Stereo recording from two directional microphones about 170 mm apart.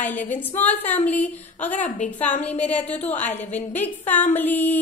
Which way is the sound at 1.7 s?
45° left (ahead or behind).